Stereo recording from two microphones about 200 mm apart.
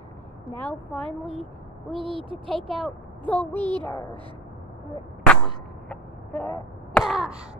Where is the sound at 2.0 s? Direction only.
25° right (ahead or behind).